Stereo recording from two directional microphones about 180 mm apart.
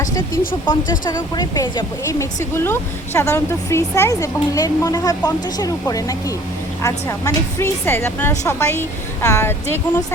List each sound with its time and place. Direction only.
0.6 s speech: 25° left (ahead or behind)